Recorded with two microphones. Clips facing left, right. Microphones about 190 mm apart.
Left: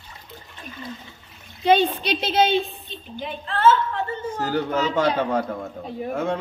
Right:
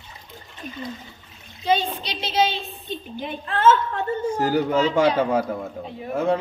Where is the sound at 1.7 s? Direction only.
60° left (ahead or behind).